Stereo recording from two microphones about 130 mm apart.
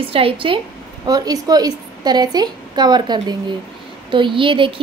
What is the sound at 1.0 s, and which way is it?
A woman's voice, 30° right (ahead or behind).